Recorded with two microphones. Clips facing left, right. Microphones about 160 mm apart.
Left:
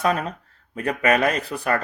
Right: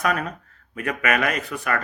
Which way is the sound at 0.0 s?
30° left (ahead or behind).